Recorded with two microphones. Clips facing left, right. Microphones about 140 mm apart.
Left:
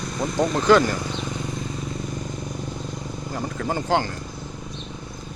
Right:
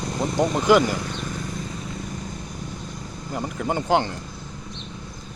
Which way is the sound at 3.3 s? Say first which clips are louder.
Right 1 dB; 20° right (ahead or behind).